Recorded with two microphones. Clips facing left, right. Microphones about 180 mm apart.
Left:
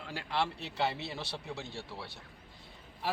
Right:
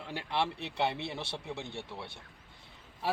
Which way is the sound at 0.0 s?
20° right (ahead or behind).